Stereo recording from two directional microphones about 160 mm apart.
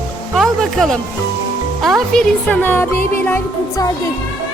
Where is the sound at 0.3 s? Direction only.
Centre (ahead or behind).